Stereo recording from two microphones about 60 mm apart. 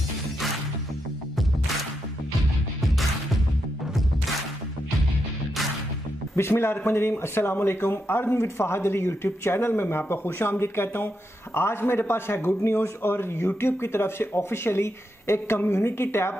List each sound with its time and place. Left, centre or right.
6.3 s a man's voice: left